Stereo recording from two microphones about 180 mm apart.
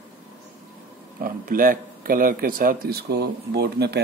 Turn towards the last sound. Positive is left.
turn(degrees=-65)  # may be behind; listen again after turning